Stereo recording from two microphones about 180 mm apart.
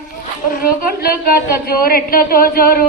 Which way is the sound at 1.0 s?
60° left (ahead or behind).